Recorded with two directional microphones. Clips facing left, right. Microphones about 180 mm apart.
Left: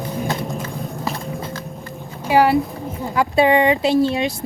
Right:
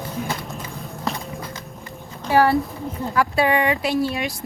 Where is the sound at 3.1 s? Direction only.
20° left (ahead or behind).